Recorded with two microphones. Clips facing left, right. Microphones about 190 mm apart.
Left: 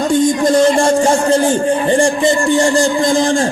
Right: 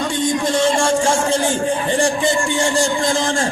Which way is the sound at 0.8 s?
40° left (ahead or behind).